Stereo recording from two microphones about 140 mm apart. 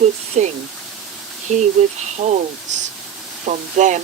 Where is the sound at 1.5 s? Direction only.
55° right (ahead or behind).